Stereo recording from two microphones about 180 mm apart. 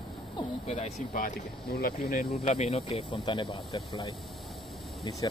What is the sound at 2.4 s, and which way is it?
Speech, 35° left (ahead or behind).